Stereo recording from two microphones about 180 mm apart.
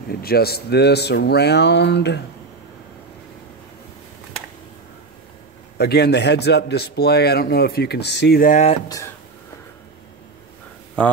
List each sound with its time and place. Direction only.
0.1 s speech: 60° left (ahead or behind)
5.8 s a man's voice: 65° left (ahead or behind); by 8.6 s 50° left (ahead or behind)
8.8 s speech: 20° left (ahead or behind)
11.0 s speech: 5° left (ahead or behind)